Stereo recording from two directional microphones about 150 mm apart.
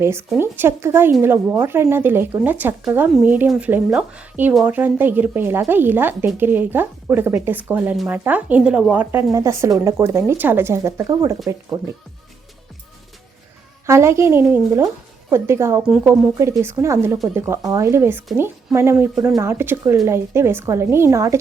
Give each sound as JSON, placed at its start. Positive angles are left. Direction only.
{"t": 0.0, "sound": "speech", "side_deg": -15}
{"t": 13.8, "sound": "speech", "side_deg": -20}